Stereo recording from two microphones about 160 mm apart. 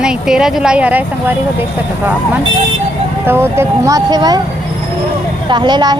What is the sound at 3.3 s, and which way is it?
Speech, 15° right (ahead or behind).